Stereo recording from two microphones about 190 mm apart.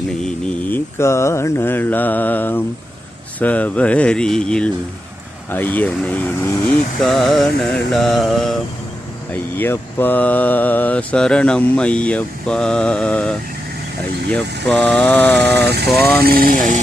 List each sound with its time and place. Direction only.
0.7 s mantra: 15° left (ahead or behind)
3.4 s speech: 10° left (ahead or behind)
5.5 s mantra: 10° left (ahead or behind)
7.9 s speech: centre (ahead or behind)
9.3 s mantra: 10° left (ahead or behind)
15.5 s speech: 60° right (ahead or behind)
15.9 s speech: centre (ahead or behind)
16.2 s speech: 50° right (ahead or behind)